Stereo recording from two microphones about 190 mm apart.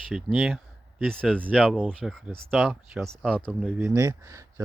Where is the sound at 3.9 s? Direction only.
15° right (ahead or behind).